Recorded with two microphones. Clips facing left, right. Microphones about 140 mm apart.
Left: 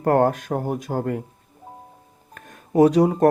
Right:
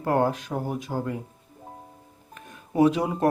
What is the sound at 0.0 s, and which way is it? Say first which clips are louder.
Speech: left 5 dB; 55° left (ahead or behind).